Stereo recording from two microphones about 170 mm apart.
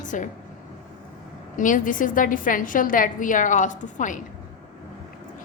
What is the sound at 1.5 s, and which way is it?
A woman's voice, 50° left (ahead or behind).